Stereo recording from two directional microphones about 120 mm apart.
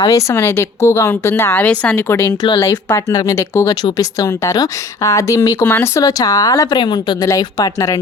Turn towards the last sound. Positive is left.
turn(degrees=30)  # may be behind; listen again after turning